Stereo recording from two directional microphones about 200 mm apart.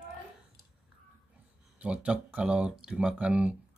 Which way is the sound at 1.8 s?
5° right (ahead or behind).